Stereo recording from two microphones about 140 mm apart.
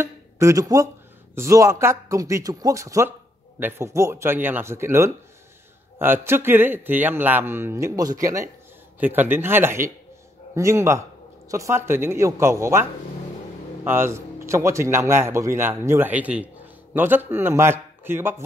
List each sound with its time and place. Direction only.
0.0 s a man's voice: 20° right (ahead or behind)
13.8 s a man's voice: 15° right (ahead or behind)